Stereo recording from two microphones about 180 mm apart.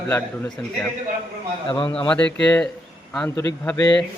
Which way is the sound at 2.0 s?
5° left (ahead or behind).